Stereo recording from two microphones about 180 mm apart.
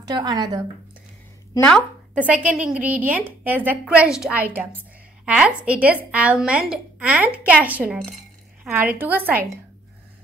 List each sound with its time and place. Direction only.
0.0 s speech: 25° right (ahead or behind)
1.5 s a woman's voice: 10° left (ahead or behind)
2.1 s a woman's voice: 5° right (ahead or behind)